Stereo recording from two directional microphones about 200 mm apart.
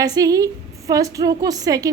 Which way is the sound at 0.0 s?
15° right (ahead or behind).